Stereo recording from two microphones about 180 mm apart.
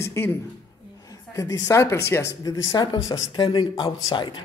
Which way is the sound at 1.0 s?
20° left (ahead or behind).